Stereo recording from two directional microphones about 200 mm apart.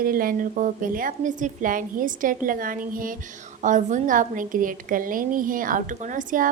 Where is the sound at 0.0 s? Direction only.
45° right (ahead or behind).